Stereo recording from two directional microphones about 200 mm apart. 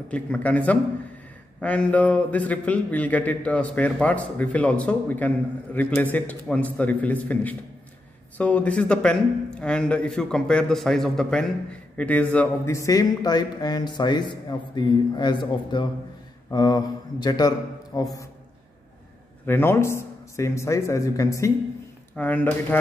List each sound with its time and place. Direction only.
0.1 s a man's voice: 5° left (ahead or behind)
19.4 s speech: 10° left (ahead or behind)